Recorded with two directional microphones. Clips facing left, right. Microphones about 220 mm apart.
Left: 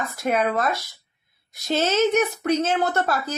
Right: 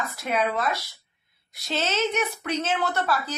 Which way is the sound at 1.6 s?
45° left (ahead or behind).